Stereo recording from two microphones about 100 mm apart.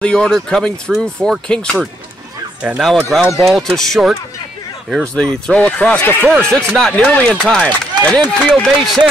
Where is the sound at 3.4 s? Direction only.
5° left (ahead or behind).